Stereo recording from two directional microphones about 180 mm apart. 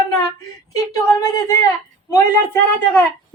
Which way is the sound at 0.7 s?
20° left (ahead or behind).